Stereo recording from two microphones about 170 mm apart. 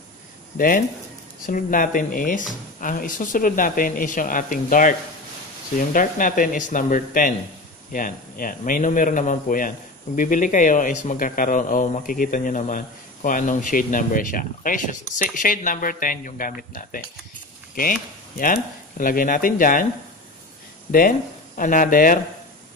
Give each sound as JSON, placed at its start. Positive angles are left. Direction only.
{"t": 0.6, "sound": "speech", "side_deg": 55}
{"t": 18.4, "sound": "speech", "side_deg": 55}
{"t": 21.5, "sound": "speech", "side_deg": 55}